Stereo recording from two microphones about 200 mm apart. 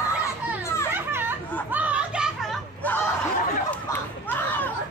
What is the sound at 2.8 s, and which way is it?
Snicker, 10° left (ahead or behind).